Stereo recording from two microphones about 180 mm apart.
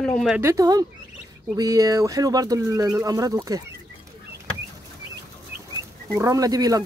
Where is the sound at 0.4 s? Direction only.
15° right (ahead or behind).